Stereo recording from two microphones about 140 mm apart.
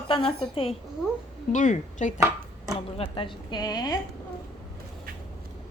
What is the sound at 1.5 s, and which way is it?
Speech, 65° left (ahead or behind).